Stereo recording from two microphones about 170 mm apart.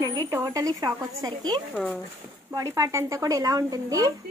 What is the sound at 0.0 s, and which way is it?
A woman's voice, 15° right (ahead or behind).